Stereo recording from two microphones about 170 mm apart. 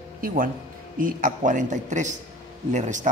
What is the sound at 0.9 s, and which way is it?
A man's voice, 55° right (ahead or behind).